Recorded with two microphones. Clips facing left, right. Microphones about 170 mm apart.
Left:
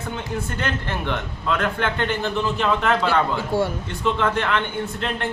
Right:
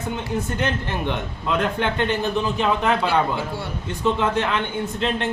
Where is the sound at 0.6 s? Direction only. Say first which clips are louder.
Right 2 dB; 15° right (ahead or behind).